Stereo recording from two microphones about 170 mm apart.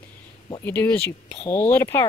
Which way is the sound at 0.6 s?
10° left (ahead or behind).